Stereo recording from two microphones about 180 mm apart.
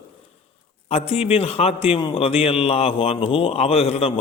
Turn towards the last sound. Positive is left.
turn(degrees=35)  # may be behind; listen again after turning